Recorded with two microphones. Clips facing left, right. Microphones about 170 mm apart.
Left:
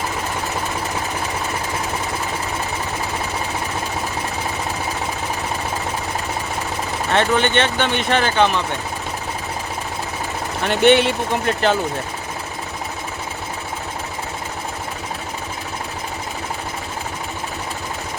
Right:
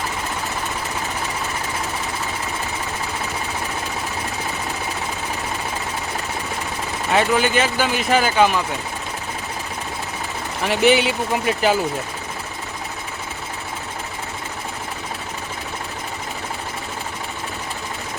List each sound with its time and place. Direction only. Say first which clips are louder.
7.1 s speech: even; 5° right (ahead or behind)
10.6 s speech: left 2 dB; centre (ahead or behind)